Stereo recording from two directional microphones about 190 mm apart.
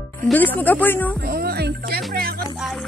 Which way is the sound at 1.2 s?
50° right (ahead or behind).